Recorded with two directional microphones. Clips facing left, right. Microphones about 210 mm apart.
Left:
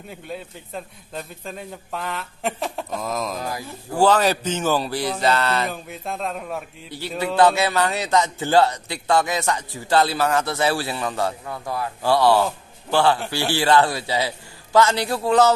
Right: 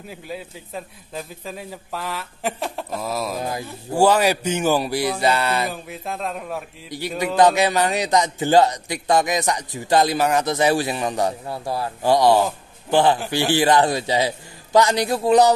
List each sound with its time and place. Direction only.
0.1 s a man's voice: 5° right (ahead or behind)
6.0 s a man's voice: centre (ahead or behind)
6.9 s a man's voice: 15° right (ahead or behind)
11.4 s speech: 30° right (ahead or behind)
12.0 s a man's voice: 15° right (ahead or behind)